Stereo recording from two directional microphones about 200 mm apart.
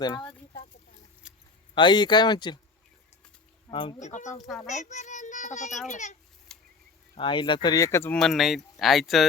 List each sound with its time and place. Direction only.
1.2 s keys jangling: 5° right (ahead or behind)
1.7 s speech: 20° left (ahead or behind)
3.7 s speech: 25° left (ahead or behind)
4.0 s a child's voice: 35° left (ahead or behind)
6.5 s a sound: 5° left (ahead or behind)
7.2 s speech: 25° left (ahead or behind); by 9.2 s centre (ahead or behind)